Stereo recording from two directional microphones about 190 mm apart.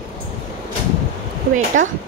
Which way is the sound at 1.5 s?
45° right (ahead or behind).